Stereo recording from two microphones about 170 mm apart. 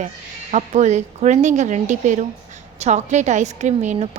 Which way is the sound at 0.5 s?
45° right (ahead or behind).